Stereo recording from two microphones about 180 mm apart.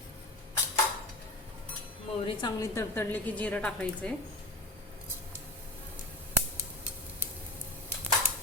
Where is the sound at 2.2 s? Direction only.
20° left (ahead or behind); by 4.1 s 5° left (ahead or behind).